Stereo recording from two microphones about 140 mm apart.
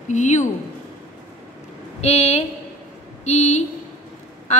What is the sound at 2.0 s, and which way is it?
A woman's voice, 50° left (ahead or behind).